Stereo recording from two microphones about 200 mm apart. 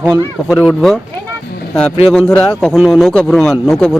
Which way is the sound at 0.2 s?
15° left (ahead or behind).